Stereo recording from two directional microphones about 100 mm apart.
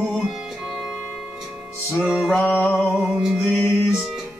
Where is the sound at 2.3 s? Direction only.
15° left (ahead or behind).